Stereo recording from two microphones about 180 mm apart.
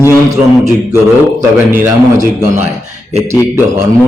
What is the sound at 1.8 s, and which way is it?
Speech, 15° right (ahead or behind).